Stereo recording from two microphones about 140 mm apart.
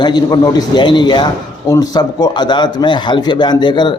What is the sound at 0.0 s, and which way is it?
A man's voice, 30° left (ahead or behind).